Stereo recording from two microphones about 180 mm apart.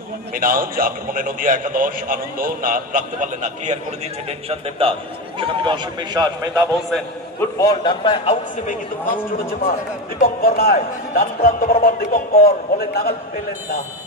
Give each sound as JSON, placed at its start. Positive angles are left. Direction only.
{"t": 0.3, "sound": "a man's voice", "side_deg": -50}
{"t": 7.3, "sound": "a man's voice", "side_deg": 20}
{"t": 9.7, "sound": "speech", "side_deg": 55}